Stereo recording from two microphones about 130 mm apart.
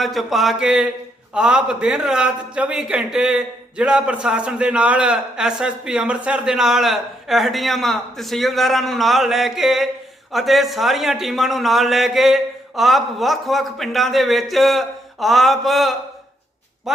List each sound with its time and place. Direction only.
0.0 s a man's voice: centre (ahead or behind)